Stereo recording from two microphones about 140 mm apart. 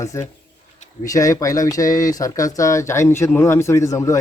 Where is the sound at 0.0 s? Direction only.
20° left (ahead or behind).